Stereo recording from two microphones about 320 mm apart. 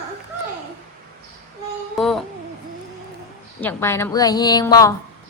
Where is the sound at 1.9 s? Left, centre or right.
Centre.